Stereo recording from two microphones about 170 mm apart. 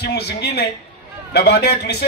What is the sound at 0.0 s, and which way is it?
Speech, 70° left (ahead or behind).